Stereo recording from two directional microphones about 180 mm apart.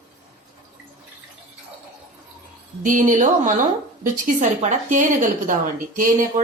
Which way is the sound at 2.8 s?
45° right (ahead or behind).